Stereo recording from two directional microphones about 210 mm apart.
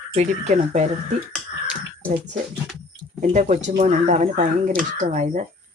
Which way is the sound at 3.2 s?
35° right (ahead or behind).